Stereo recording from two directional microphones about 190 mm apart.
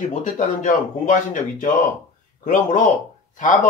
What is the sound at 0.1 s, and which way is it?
Speech, 40° left (ahead or behind).